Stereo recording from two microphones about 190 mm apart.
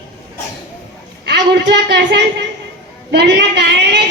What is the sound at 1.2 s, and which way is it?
A woman's voice, 60° right (ahead or behind).